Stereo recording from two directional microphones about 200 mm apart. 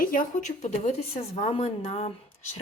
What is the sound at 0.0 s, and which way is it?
A woman's voice, 45° left (ahead or behind).